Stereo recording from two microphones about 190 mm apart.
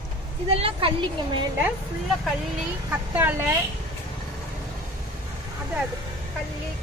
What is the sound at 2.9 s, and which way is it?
Speech, 10° right (ahead or behind).